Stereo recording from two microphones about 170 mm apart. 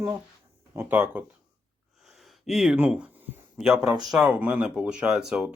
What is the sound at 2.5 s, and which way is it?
Speech, centre (ahead or behind).